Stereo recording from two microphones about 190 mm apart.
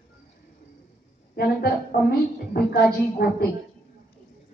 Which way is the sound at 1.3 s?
55° left (ahead or behind).